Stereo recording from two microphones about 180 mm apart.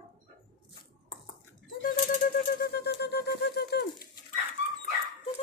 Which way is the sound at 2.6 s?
65° left (ahead or behind).